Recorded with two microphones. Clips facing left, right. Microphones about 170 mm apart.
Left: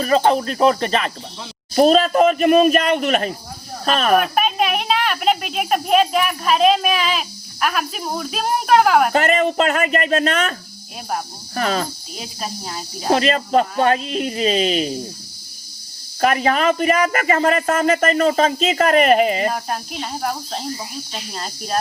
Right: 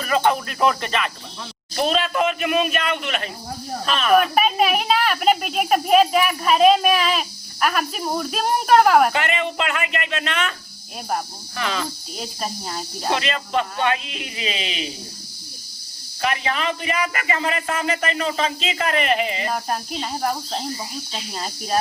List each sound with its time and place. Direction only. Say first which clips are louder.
0.0 s speech: left 4 dB; 35° left (ahead or behind)
4.2 s speech: even; centre (ahead or behind)
9.1 s speech: left 7 dB; 40° left (ahead or behind)
11.5 s speech: left 5 dB; 40° left (ahead or behind)
12.1 s speech: even; centre (ahead or behind)
13.1 s speech: left 7 dB; 40° left (ahead or behind)
16.2 s speech: left 7 dB; 45° left (ahead or behind)
19.5 s speech: left 2 dB; centre (ahead or behind)